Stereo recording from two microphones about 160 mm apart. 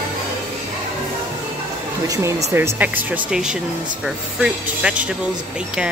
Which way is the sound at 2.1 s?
20° right (ahead or behind).